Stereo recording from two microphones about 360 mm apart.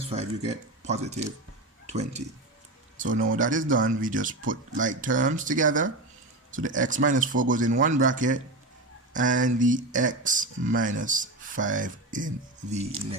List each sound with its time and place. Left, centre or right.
0.1 s speech: centre